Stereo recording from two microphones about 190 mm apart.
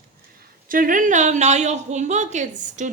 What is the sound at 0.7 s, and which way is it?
A woman's voice, 45° right (ahead or behind).